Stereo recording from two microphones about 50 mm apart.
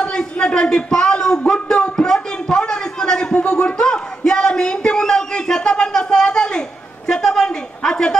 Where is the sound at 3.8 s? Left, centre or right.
Centre.